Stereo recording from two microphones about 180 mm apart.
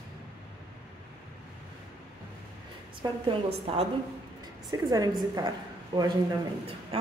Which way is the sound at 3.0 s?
20° right (ahead or behind).